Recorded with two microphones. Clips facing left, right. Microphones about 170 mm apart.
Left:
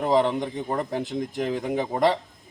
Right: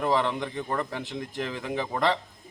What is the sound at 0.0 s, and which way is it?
A man's voice, 40° left (ahead or behind).